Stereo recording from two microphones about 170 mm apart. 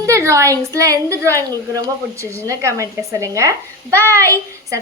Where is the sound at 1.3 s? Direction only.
15° left (ahead or behind).